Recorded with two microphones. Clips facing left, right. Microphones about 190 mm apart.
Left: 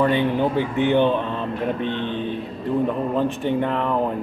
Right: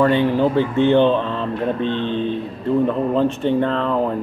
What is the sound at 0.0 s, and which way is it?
Speech, 15° left (ahead or behind).